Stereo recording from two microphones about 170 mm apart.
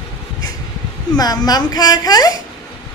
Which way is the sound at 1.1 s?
25° left (ahead or behind).